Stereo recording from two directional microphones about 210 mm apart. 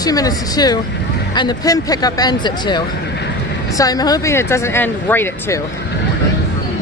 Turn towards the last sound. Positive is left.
turn(degrees=10)  # may be behind; listen again after turning